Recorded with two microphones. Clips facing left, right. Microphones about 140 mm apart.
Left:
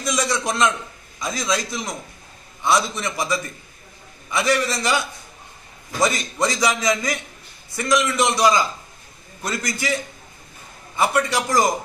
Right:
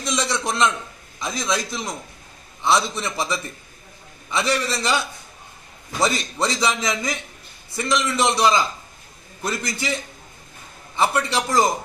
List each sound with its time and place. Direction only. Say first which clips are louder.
0.0 s a man's voice: left 1 dB; 25° right (ahead or behind)
11.0 s a man's voice: left 1 dB; 25° right (ahead or behind)